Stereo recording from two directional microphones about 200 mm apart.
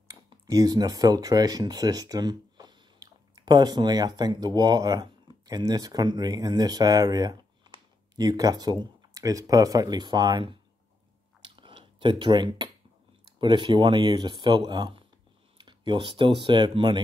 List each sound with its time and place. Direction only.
0.1 s speech: 20° right (ahead or behind)
11.5 s a sound: 25° right (ahead or behind)
13.4 s speech: 25° right (ahead or behind)